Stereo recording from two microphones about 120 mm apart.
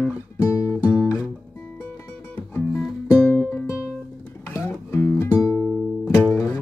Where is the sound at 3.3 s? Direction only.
20° left (ahead or behind).